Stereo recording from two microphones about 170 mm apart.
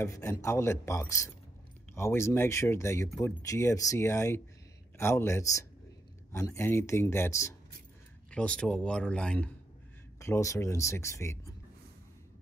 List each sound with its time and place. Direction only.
0.0 s speech: 15° left (ahead or behind)
8.3 s speech: 5° left (ahead or behind)
10.1 s speech: 15° left (ahead or behind)